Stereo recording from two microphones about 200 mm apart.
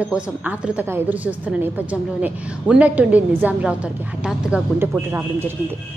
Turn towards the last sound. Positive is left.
turn(degrees=-10)  # may be behind; listen again after turning